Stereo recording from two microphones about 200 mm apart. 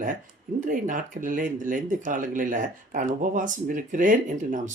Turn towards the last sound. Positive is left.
turn(degrees=-40)  # may be behind; listen again after turning